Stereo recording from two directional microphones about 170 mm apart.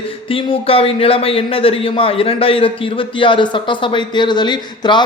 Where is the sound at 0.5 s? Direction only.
35° left (ahead or behind).